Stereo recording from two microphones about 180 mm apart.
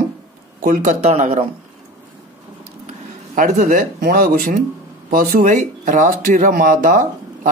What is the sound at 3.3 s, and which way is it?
Speech, 45° right (ahead or behind).